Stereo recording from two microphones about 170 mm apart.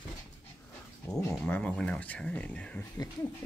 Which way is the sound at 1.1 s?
10° left (ahead or behind).